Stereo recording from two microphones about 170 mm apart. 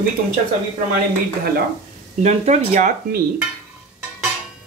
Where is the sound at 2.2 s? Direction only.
40° right (ahead or behind).